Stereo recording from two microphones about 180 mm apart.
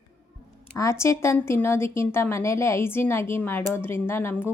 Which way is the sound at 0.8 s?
15° left (ahead or behind).